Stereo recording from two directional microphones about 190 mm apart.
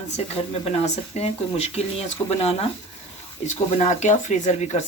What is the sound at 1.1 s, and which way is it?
Speech, 35° left (ahead or behind).